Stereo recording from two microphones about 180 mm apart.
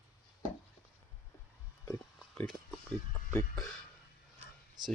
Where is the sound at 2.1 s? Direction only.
Centre (ahead or behind).